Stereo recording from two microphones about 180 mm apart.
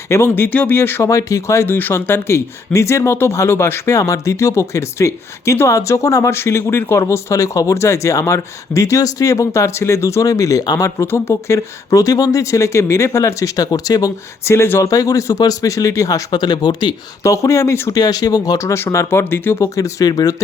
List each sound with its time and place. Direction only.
0.1 s speech: 15° left (ahead or behind)